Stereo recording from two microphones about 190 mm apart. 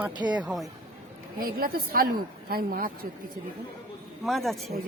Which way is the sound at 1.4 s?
50° right (ahead or behind).